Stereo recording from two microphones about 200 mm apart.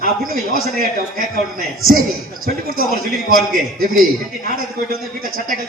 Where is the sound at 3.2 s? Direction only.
45° right (ahead or behind).